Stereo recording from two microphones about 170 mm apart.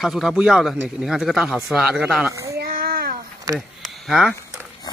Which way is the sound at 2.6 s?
60° right (ahead or behind).